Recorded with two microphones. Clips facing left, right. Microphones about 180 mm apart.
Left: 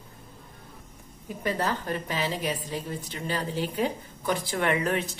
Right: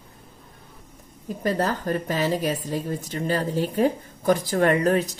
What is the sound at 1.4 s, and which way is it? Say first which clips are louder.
A woman's voice: right 4 dB; 40° right (ahead or behind).